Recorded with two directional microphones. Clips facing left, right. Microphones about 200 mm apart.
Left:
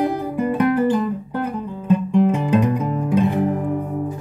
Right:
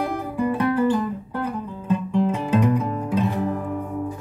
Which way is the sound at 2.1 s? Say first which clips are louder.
Left 4 dB; 20° left (ahead or behind).